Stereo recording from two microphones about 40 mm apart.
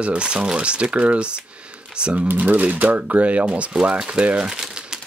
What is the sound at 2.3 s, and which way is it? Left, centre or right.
Speech, right.